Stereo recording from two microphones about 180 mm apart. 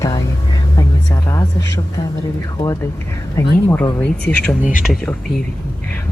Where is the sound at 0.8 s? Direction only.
15° left (ahead or behind).